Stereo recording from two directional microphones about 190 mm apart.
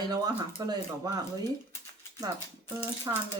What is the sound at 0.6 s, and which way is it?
Speech, 20° right (ahead or behind).